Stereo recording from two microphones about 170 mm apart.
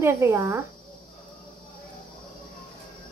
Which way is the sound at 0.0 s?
15° right (ahead or behind).